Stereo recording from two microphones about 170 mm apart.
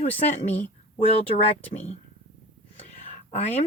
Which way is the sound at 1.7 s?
40° left (ahead or behind).